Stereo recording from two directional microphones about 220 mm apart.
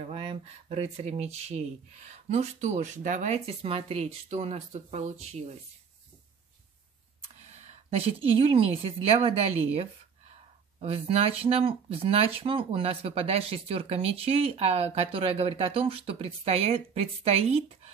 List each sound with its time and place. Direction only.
0.1 s speech: 25° right (ahead or behind)
7.5 s speech: 30° right (ahead or behind)